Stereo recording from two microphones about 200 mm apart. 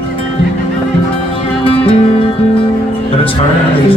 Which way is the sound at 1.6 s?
30° left (ahead or behind).